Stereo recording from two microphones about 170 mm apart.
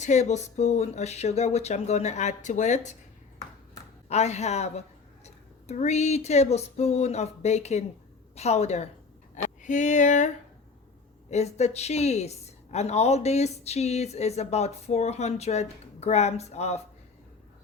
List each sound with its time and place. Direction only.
0.0 s speech: 45° left (ahead or behind)
4.1 s speech: 40° left (ahead or behind)